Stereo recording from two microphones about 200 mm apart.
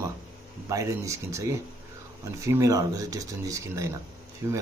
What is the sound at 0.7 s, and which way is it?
Speech, 15° right (ahead or behind).